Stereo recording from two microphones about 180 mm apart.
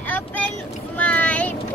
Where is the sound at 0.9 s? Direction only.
10° left (ahead or behind).